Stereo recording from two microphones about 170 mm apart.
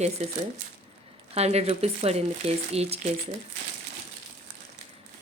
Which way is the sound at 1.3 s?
40° right (ahead or behind).